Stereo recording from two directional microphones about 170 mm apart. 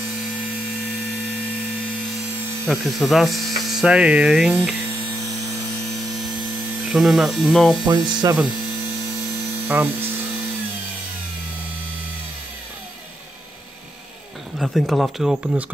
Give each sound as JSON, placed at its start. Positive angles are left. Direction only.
{"t": 2.7, "sound": "speech", "side_deg": 0}
{"t": 6.8, "sound": "speech", "side_deg": 0}
{"t": 7.8, "sound": "speech", "side_deg": -25}
{"t": 9.7, "sound": "speech", "side_deg": -10}
{"t": 14.6, "sound": "speech", "side_deg": 0}